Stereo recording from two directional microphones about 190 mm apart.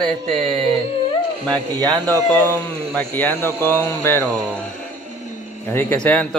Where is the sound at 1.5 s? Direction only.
20° right (ahead or behind).